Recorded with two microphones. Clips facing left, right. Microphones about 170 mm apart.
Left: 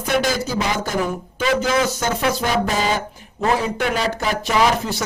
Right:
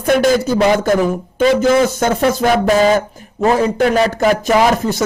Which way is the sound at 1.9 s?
50° right (ahead or behind).